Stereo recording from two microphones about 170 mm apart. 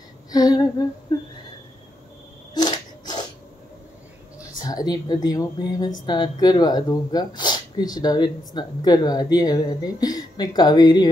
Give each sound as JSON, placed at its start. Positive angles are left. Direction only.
{"t": 0.3, "sound": "humming", "side_deg": 20}
{"t": 1.1, "sound": "speech", "side_deg": 25}
{"t": 2.5, "sound": "a sound", "side_deg": 25}
{"t": 4.6, "sound": "speech", "side_deg": 20}